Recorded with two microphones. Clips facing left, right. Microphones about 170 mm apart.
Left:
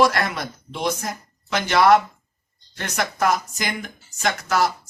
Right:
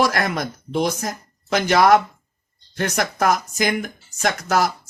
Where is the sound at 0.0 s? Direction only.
45° right (ahead or behind).